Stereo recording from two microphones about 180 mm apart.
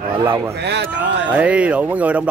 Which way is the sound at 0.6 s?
70° right (ahead or behind).